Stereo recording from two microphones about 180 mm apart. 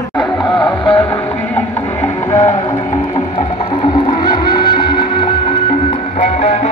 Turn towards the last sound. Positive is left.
turn(degrees=35)  # may be behind; listen again after turning